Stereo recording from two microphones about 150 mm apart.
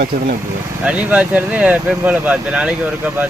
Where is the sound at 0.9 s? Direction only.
10° right (ahead or behind).